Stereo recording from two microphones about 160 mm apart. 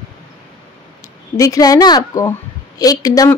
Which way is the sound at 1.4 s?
20° left (ahead or behind).